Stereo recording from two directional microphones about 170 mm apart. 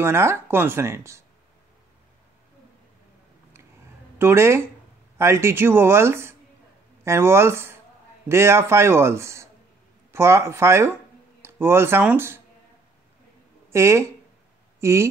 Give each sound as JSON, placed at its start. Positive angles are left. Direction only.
{"t": 0.0, "sound": "speech", "side_deg": -15}
{"t": 4.2, "sound": "speech", "side_deg": -15}
{"t": 13.7, "sound": "speech", "side_deg": -15}